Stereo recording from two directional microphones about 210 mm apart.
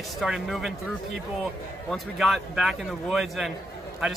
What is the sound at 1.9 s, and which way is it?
Speech, centre (ahead or behind).